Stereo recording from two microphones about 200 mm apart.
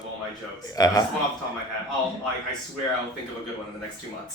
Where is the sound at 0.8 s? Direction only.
20° left (ahead or behind).